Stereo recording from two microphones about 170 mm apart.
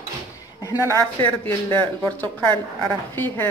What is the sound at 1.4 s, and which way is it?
A woman's voice, 10° left (ahead or behind).